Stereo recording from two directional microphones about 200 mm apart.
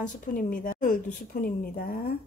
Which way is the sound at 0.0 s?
40° left (ahead or behind).